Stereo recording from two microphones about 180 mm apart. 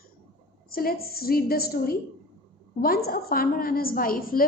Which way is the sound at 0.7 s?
55° left (ahead or behind).